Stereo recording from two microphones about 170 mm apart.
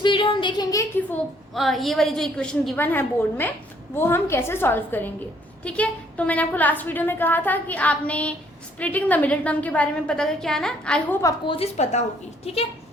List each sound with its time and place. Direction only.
0.0 s a sound: 30° left (ahead or behind)
1.5 s a woman's voice: centre (ahead or behind)
11.2 s a woman's voice: 20° left (ahead or behind)
11.5 s a woman's voice: 40° left (ahead or behind)